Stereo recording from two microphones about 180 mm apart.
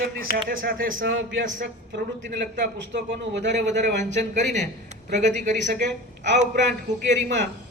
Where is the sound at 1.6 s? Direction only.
55° right (ahead or behind); by 4.0 s 75° right (ahead or behind).